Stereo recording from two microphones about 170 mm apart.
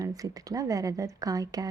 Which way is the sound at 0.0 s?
20° right (ahead or behind).